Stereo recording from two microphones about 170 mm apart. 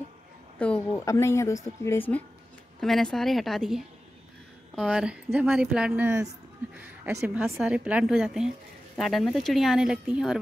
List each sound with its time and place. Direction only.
0.6 s speech: 5° left (ahead or behind)
1.0 s speech: 15° left (ahead or behind); by 10.4 s 5° right (ahead or behind)